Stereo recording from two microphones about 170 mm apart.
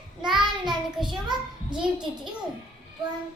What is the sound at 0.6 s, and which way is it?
A child's voice, 25° right (ahead or behind).